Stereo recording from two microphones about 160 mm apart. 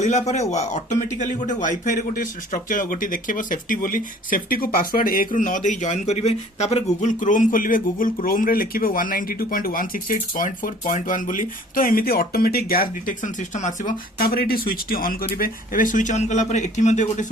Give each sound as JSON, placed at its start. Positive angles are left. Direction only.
{"t": 0.0, "sound": "speech", "side_deg": 45}